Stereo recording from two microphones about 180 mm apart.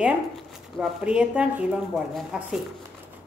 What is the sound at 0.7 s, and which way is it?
Speech, 5° right (ahead or behind).